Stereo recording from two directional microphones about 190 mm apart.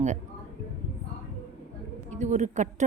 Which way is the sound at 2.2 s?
40° right (ahead or behind).